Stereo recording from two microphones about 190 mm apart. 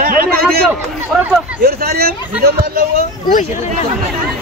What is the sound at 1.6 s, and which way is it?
Speech, 55° right (ahead or behind).